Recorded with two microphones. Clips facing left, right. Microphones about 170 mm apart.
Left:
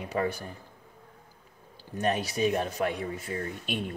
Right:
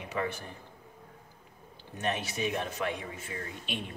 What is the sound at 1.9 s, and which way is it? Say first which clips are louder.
Speech: left 5 dB; 40° left (ahead or behind).